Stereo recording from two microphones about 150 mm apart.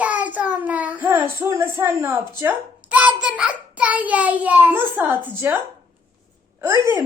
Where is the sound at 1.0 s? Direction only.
20° right (ahead or behind).